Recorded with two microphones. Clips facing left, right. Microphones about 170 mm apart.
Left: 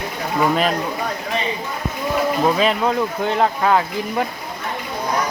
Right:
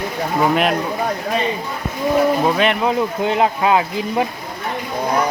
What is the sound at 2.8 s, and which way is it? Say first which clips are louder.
Speech: right 1 dB; 15° right (ahead or behind).